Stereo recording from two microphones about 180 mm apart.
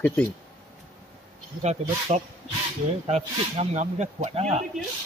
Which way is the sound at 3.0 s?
35° right (ahead or behind).